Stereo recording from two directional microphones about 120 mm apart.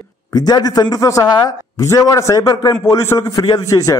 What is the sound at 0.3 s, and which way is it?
A man's voice, 35° left (ahead or behind).